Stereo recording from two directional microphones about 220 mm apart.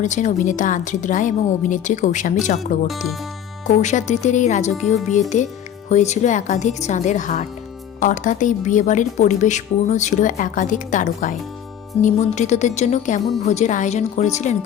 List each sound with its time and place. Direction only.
0.0 s speech: 35° left (ahead or behind)
2.8 s speech: centre (ahead or behind)
3.7 s speech: 30° left (ahead or behind)